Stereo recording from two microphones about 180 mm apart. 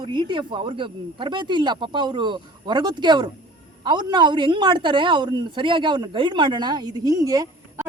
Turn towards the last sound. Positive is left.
turn(degrees=-20)  # may be behind; listen again after turning